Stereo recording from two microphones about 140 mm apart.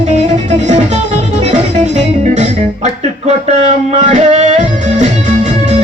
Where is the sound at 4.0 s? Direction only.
55° right (ahead or behind).